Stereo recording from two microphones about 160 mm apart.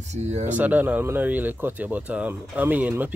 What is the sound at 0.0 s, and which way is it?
Speech, 45° right (ahead or behind).